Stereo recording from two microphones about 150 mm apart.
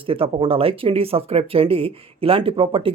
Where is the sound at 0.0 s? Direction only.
35° right (ahead or behind).